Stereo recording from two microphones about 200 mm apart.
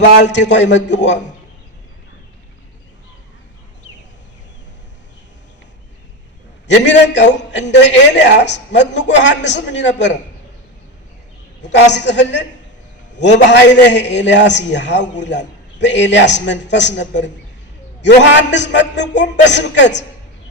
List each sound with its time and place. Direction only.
0.2 s a man's voice: 60° left (ahead or behind)
6.8 s a man's voice: 60° left (ahead or behind)
11.6 s a man's voice: 60° left (ahead or behind)